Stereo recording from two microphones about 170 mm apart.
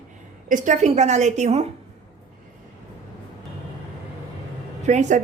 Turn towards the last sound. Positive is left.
turn(degrees=-45)  # may be behind; listen again after turning